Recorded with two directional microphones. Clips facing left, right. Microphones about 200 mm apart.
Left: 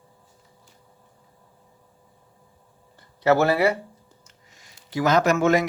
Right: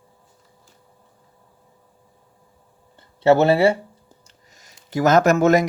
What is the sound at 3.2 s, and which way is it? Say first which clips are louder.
Speech: right 4 dB; 25° right (ahead or behind).